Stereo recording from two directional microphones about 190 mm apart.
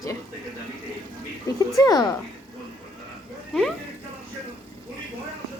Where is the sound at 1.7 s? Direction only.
20° left (ahead or behind).